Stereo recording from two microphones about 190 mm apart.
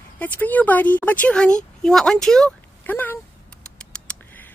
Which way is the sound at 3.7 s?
5° left (ahead or behind).